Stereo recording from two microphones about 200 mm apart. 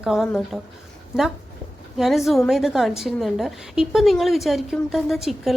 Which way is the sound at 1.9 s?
Centre (ahead or behind).